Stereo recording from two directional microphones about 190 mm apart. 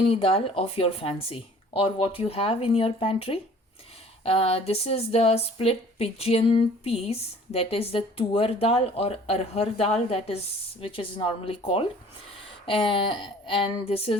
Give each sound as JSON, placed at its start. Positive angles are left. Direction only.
{"t": 0.1, "sound": "speech", "side_deg": 30}